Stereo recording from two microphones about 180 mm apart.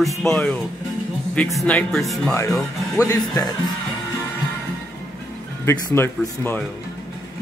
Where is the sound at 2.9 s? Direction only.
20° left (ahead or behind).